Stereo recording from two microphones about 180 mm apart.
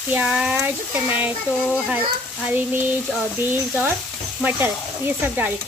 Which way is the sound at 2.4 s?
10° right (ahead or behind).